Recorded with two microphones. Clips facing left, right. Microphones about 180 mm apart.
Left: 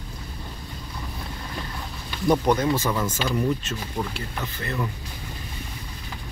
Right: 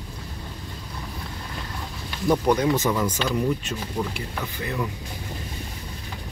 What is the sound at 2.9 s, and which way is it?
Speech, centre (ahead or behind).